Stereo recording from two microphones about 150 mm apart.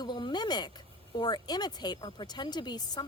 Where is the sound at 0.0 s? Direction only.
30° left (ahead or behind).